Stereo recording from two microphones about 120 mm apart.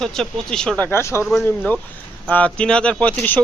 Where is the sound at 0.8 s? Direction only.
20° left (ahead or behind).